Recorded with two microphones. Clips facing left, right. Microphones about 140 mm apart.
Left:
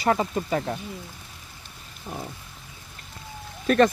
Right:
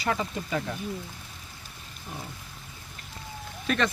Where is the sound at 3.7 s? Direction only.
45° left (ahead or behind).